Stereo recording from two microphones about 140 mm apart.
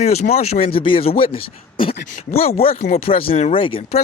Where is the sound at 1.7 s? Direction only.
40° left (ahead or behind).